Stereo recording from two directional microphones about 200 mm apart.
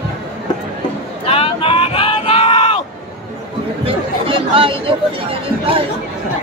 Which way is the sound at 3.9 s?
25° right (ahead or behind).